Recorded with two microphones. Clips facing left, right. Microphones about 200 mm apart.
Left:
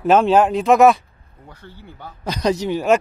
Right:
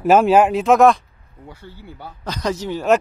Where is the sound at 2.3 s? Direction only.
15° left (ahead or behind).